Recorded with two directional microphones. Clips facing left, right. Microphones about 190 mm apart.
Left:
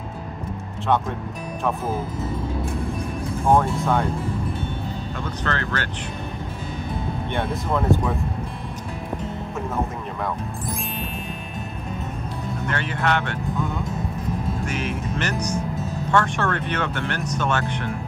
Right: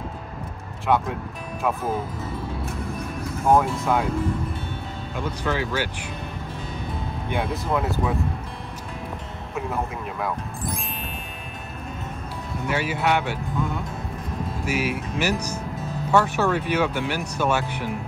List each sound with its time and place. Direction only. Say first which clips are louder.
0.8 s speech: even; centre (ahead or behind)
3.4 s speech: even; centre (ahead or behind)
5.1 s speech: right 3 dB; 10° right (ahead or behind)
7.2 s speech: right 1 dB; 5° right (ahead or behind)
12.6 s speech: right 2 dB; 5° right (ahead or behind)
14.6 s speech: right 1 dB; 5° right (ahead or behind)